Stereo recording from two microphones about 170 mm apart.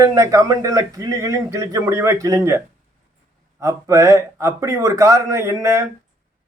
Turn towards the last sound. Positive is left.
turn(degrees=-15)  # may be behind; listen again after turning